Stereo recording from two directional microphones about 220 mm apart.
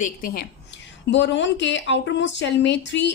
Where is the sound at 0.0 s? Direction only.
40° left (ahead or behind).